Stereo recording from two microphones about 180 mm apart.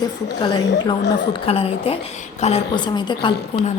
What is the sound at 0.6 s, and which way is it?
Speech, 75° left (ahead or behind).